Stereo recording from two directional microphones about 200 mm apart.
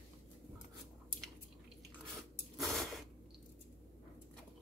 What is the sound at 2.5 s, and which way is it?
Mechanisms, centre (ahead or behind).